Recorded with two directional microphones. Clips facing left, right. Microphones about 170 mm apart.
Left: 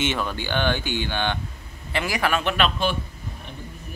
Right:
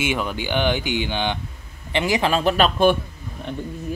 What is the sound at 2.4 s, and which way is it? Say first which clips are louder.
Speech: right 6 dB; 40° right (ahead or behind).